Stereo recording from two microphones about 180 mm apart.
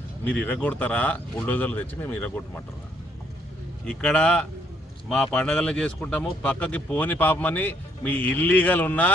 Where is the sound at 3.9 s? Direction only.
5° left (ahead or behind).